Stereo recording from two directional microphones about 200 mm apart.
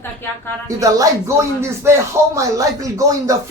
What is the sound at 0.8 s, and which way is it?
Speech, 15° right (ahead or behind).